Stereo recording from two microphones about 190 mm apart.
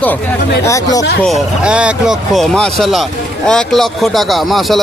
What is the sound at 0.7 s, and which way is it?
Speech, 20° left (ahead or behind).